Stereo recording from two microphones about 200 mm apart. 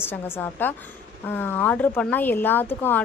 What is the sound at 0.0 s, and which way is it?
Speech, 10° left (ahead or behind).